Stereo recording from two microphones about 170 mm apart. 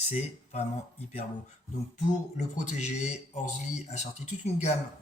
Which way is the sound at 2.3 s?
45° left (ahead or behind).